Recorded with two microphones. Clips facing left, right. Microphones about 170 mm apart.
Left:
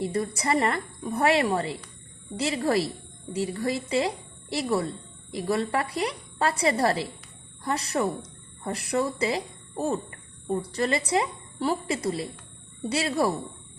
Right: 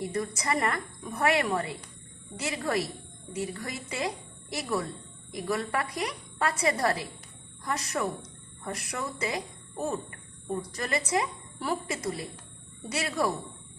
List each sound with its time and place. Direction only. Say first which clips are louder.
0.0 s a woman's voice: left 4 dB; 30° left (ahead or behind)